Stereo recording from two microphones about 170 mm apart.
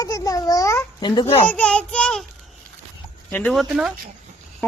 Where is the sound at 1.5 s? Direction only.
5° left (ahead or behind).